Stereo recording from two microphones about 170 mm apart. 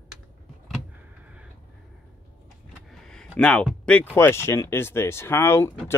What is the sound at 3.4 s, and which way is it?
Speech, 5° left (ahead or behind).